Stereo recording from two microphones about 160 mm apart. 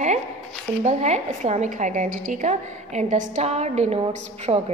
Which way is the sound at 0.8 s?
45° right (ahead or behind).